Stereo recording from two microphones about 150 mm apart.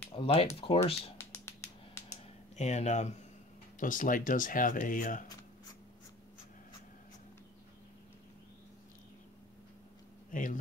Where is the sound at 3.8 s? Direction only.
60° left (ahead or behind).